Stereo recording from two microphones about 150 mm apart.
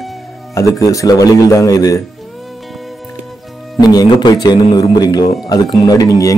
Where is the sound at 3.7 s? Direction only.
25° left (ahead or behind).